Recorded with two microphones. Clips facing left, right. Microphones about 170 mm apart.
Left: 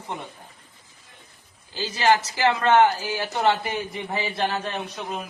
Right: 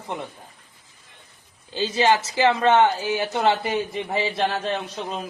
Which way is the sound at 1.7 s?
20° right (ahead or behind).